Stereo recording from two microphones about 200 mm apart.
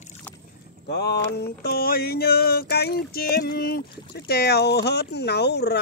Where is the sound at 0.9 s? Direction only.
55° left (ahead or behind).